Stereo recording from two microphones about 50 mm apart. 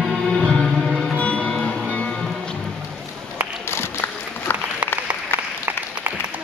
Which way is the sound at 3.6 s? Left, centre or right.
Left.